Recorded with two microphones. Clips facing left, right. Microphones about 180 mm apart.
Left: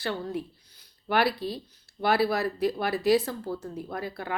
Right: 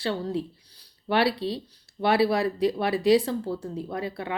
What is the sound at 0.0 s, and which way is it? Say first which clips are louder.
Speech: right 3 dB; 30° right (ahead or behind).